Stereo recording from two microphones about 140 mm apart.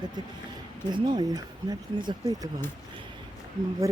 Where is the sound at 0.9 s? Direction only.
35° right (ahead or behind).